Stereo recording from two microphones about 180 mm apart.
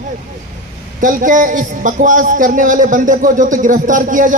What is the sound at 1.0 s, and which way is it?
A man's voice, 45° right (ahead or behind).